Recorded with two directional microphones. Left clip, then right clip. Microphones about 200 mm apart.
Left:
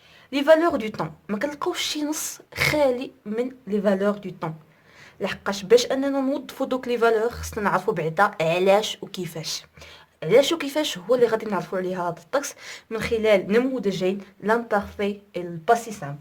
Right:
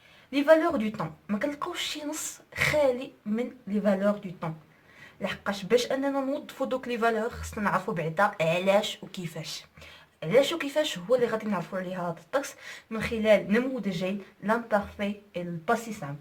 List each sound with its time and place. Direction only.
0.3 s speech: 50° left (ahead or behind)